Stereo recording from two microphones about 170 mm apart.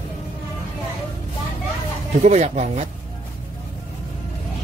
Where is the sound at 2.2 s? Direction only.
40° right (ahead or behind).